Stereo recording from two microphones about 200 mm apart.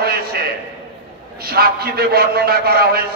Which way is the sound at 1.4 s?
50° right (ahead or behind).